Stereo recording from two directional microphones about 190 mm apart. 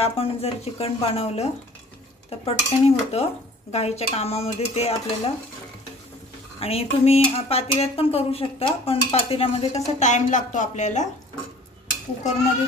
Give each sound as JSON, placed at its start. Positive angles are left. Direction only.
{"t": 0.0, "sound": "speech", "side_deg": 30}
{"t": 6.6, "sound": "speech", "side_deg": 30}